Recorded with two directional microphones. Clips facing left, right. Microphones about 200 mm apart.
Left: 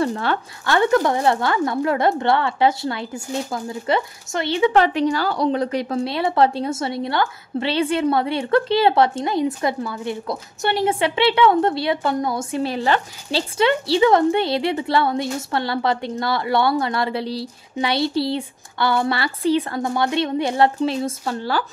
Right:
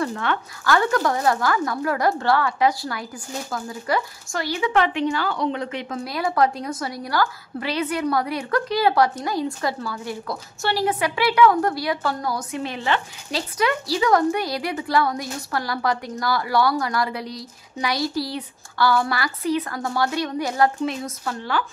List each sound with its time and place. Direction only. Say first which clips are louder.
0.0 s speech: left 3 dB; 35° left (ahead or behind)